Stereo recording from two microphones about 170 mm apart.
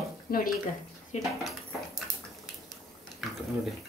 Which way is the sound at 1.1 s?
40° left (ahead or behind).